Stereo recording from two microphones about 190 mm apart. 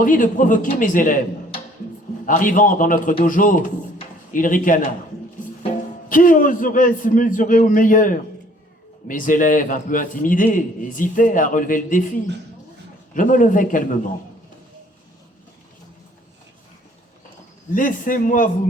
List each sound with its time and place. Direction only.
0.0 s a man's voice: 45° left (ahead or behind)
2.2 s a man's voice: 45° left (ahead or behind)
6.1 s a man's voice: 45° left (ahead or behind)
17.7 s a man's voice: 45° left (ahead or behind)